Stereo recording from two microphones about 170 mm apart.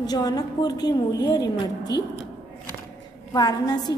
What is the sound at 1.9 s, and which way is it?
Speech, 85° left.